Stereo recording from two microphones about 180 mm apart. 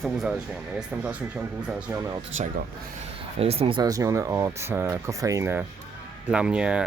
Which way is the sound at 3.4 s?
35° right (ahead or behind).